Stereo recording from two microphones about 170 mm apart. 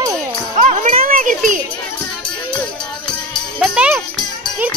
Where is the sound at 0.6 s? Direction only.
45° right (ahead or behind).